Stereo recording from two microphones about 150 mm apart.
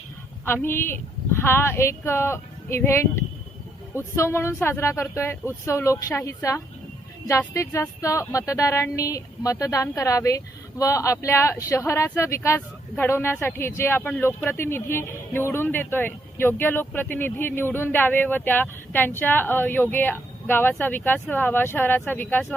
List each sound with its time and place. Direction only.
0.4 s speech: 15° left (ahead or behind)
4.1 s speech: 15° left (ahead or behind)